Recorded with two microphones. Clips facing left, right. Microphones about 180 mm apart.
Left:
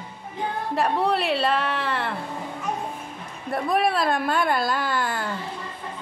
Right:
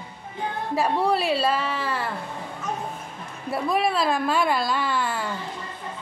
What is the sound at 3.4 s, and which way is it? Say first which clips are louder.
Speech: left 1 dB; centre (ahead or behind).